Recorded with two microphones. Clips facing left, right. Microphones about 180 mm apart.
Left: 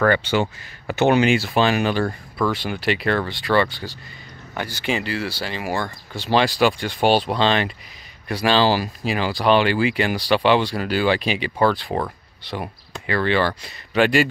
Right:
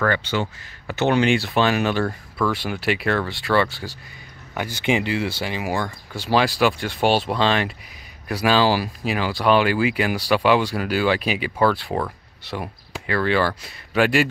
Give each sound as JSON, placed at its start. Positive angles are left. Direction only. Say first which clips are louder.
{"t": 0.9, "sound": "speech", "louder": "left 2 dB", "side_deg": 10}
{"t": 4.8, "sound": "speech", "louder": "right 3 dB", "side_deg": -15}